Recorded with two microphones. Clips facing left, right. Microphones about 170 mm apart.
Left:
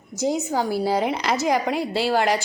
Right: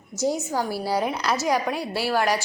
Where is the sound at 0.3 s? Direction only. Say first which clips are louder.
Left 2 dB; 20° left (ahead or behind).